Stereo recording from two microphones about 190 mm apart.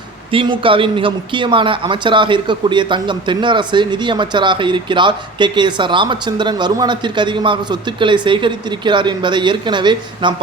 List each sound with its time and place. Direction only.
0.3 s speech: 25° right (ahead or behind)